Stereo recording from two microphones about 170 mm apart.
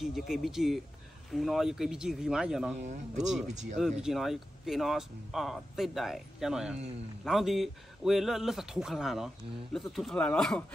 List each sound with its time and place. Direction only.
0.0 s speech: centre (ahead or behind)
2.8 s speech: 45° right (ahead or behind)
4.0 s speech: centre (ahead or behind)